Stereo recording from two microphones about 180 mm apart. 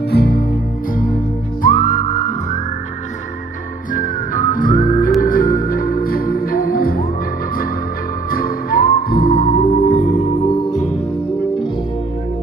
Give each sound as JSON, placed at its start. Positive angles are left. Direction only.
{"t": 0.1, "sound": "music", "side_deg": 60}
{"t": 1.6, "sound": "whistling", "side_deg": 50}
{"t": 3.9, "sound": "music", "side_deg": 50}
{"t": 8.3, "sound": "music", "side_deg": 55}
{"t": 10.4, "sound": "music", "side_deg": 35}